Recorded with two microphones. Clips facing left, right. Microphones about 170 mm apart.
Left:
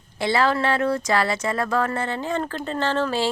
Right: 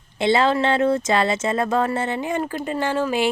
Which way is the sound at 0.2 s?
20° right (ahead or behind).